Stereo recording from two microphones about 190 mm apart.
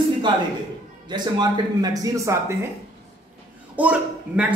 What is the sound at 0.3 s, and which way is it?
Speech, 25° right (ahead or behind).